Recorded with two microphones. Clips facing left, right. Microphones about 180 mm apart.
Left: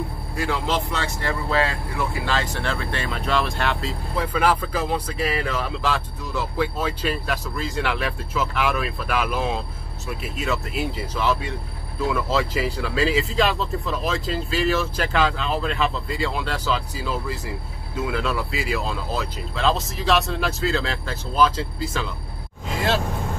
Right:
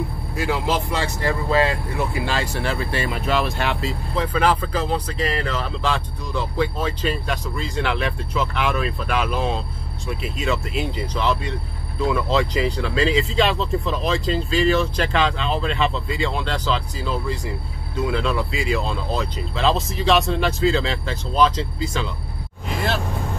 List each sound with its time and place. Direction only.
0.4 s speech: 5° right (ahead or behind)